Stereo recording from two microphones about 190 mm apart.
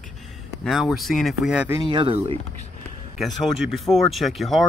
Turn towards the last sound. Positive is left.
turn(degrees=0)  # may be behind; listen again after turning